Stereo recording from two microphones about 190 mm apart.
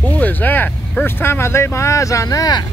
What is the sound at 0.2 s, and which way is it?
Speech, 10° left (ahead or behind).